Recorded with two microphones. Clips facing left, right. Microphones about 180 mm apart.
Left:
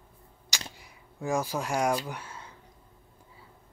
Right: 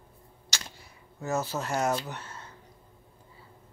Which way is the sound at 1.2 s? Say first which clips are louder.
Left 1 dB; 10° left (ahead or behind).